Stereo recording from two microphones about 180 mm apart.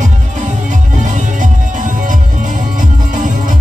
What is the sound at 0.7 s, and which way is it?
Music, 45° right (ahead or behind).